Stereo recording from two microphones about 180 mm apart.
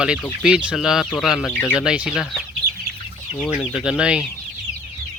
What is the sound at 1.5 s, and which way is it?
Chicken, 10° left (ahead or behind).